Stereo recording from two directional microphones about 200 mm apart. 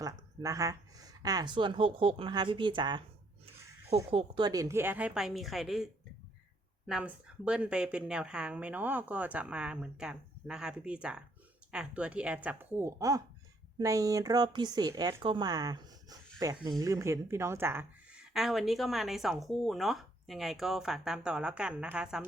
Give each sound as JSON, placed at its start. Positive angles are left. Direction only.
{"t": 0.0, "sound": "a woman's voice", "side_deg": -15}